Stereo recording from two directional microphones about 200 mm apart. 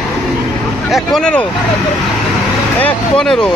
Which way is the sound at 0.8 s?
Centre (ahead or behind).